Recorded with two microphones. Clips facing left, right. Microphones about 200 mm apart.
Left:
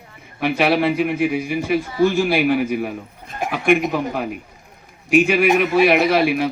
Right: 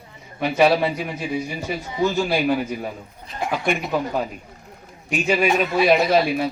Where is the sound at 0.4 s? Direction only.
60° left (ahead or behind).